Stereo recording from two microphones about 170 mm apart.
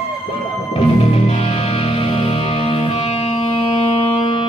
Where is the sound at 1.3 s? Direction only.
35° left (ahead or behind).